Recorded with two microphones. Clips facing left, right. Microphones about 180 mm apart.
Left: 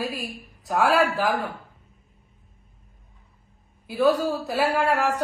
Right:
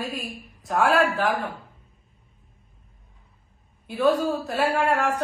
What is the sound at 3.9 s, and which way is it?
A woman's voice, centre (ahead or behind).